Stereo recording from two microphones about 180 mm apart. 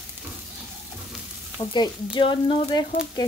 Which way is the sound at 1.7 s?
25° left (ahead or behind).